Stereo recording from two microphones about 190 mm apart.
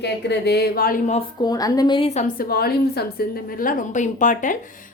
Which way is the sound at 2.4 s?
55° left (ahead or behind).